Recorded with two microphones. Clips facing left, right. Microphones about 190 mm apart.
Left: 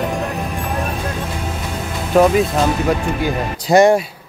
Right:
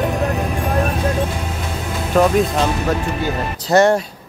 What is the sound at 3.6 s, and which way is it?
Speech, 15° left (ahead or behind).